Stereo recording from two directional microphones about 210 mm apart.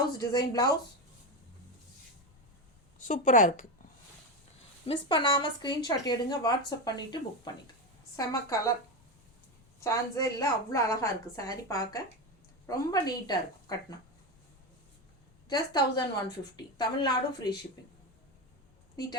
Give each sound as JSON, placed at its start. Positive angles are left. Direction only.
{"t": 0.2, "sound": "a woman's voice", "side_deg": 15}
{"t": 3.0, "sound": "a woman's voice", "side_deg": 35}
{"t": 4.9, "sound": "a woman's voice", "side_deg": 20}
{"t": 9.8, "sound": "a woman's voice", "side_deg": 15}
{"t": 15.4, "sound": "a woman's voice", "side_deg": 20}